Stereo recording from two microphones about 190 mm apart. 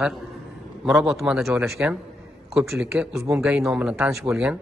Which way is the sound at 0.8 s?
Centre (ahead or behind).